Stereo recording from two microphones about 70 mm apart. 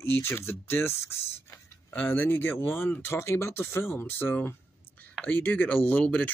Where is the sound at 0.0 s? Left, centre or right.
Left.